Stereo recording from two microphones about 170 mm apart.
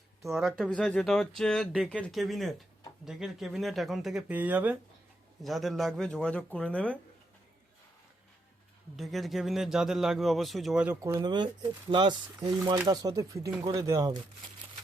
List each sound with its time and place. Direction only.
0.2 s a man's voice: centre (ahead or behind)
9.0 s a man's voice: centre (ahead or behind)
11.0 s speech: 20° right (ahead or behind)